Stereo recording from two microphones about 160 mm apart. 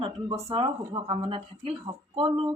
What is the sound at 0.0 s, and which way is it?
A woman's voice, 30° right (ahead or behind).